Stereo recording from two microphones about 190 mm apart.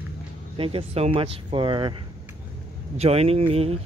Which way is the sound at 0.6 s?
30° right (ahead or behind).